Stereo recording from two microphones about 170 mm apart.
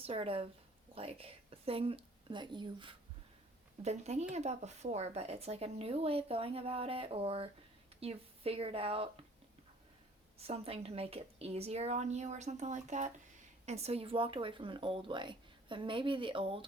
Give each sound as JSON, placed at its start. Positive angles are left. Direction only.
{"t": 0.0, "sound": "a woman's voice", "side_deg": -35}
{"t": 3.8, "sound": "speech", "side_deg": -40}
{"t": 10.3, "sound": "speech", "side_deg": -35}